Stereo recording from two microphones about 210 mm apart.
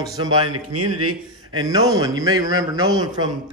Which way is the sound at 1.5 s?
20° right (ahead or behind).